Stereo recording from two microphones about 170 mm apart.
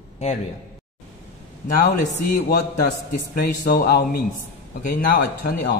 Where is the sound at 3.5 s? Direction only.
65° left (ahead or behind).